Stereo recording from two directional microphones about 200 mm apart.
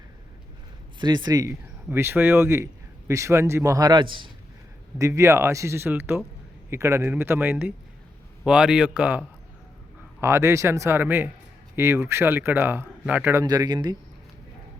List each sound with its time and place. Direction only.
0.9 s speech: 20° right (ahead or behind)